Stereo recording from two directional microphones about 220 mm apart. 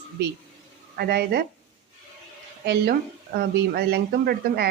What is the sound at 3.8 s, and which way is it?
Speech, 45° right (ahead or behind).